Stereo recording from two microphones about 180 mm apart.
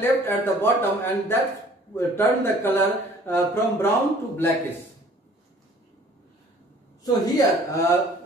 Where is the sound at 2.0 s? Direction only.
15° left (ahead or behind).